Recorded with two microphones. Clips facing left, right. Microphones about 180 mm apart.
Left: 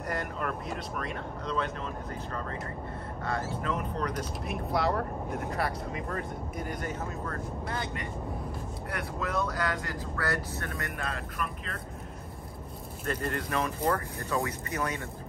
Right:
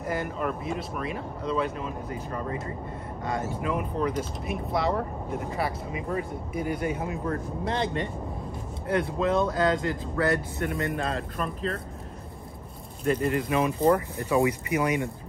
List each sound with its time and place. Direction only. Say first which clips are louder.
0.0 s speech: right 4 dB; centre (ahead or behind)
7.6 s speech: right 10 dB; 25° right (ahead or behind)
13.0 s speech: right 7 dB; 5° right (ahead or behind)